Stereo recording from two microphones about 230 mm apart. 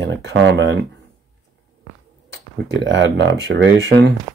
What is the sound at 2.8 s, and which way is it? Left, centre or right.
Speech, right.